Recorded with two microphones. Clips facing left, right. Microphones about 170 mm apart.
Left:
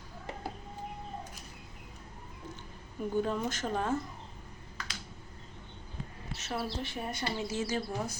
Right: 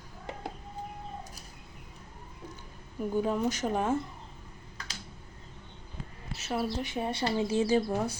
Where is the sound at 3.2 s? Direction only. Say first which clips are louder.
Right 5 dB; 10° right (ahead or behind).